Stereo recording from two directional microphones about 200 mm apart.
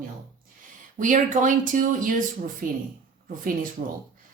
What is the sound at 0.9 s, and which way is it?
A woman's voice, 40° right (ahead or behind).